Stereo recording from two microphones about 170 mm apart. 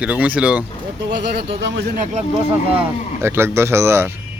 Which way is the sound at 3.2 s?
15° right (ahead or behind).